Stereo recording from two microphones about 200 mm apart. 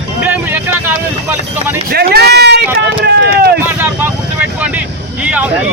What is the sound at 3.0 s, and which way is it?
Run, 55° right (ahead or behind).